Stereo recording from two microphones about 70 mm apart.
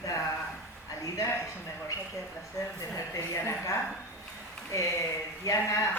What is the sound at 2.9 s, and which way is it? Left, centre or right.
Speech, left.